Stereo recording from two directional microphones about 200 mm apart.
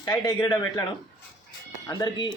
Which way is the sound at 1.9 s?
20° left (ahead or behind).